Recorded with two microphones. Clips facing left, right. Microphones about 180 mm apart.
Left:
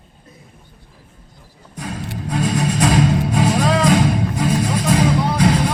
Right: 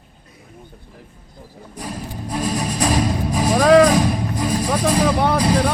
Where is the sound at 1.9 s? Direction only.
70° left (ahead or behind).